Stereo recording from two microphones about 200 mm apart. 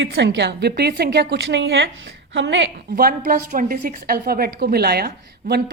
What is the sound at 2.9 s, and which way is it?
A woman's voice, 50° right (ahead or behind).